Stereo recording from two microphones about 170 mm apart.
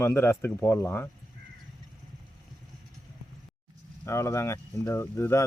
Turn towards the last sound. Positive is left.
turn(degrees=15)  # may be behind; listen again after turning